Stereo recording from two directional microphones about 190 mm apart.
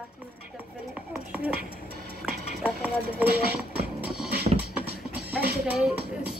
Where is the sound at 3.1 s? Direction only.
55° right (ahead or behind).